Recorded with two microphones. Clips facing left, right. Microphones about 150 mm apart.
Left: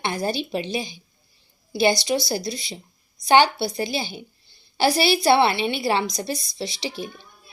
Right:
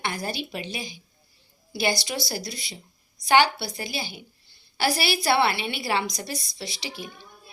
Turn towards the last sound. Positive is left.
turn(degrees=25)  # may be behind; listen again after turning